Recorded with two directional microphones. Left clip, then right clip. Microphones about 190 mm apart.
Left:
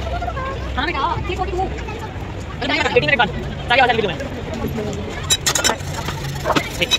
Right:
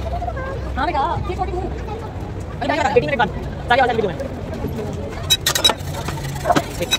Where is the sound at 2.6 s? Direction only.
60° right (ahead or behind).